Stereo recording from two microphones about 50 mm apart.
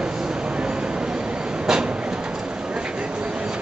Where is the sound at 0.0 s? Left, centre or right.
Centre.